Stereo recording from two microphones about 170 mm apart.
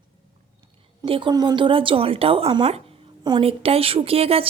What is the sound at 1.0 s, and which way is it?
Speech, 30° right (ahead or behind).